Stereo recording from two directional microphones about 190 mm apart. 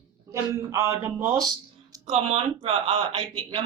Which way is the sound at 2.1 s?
30° right (ahead or behind).